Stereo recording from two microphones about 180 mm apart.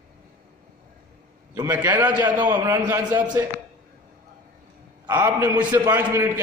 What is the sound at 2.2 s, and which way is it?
A man's voice, 20° right (ahead or behind).